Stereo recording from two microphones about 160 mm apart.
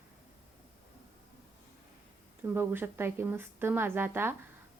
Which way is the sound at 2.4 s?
15° right (ahead or behind).